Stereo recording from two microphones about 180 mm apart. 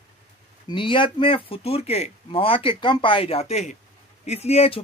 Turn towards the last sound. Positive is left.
turn(degrees=35)  # may be behind; listen again after turning